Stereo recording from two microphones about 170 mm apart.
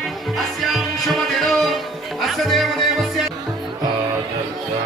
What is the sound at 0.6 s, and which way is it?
Music, centre (ahead or behind).